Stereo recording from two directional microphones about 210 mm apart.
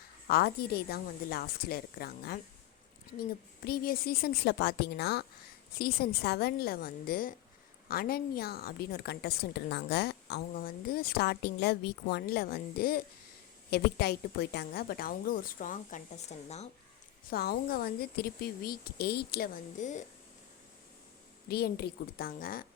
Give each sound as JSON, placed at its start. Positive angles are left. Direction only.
{"t": 0.3, "sound": "a woman's voice", "side_deg": 50}
{"t": 17.2, "sound": "a woman's voice", "side_deg": 45}
{"t": 21.4, "sound": "a woman's voice", "side_deg": 50}